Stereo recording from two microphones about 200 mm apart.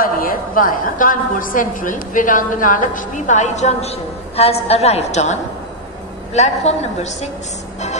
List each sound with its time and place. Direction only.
0.0 s a woman's voice: 45° left (ahead or behind)